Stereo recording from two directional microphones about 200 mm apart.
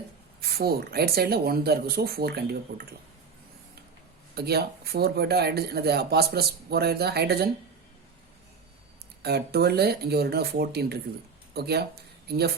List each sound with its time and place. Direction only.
0.4 s speech: 50° right (ahead or behind)
4.4 s speech: 50° right (ahead or behind)
9.2 s speech: 55° right (ahead or behind)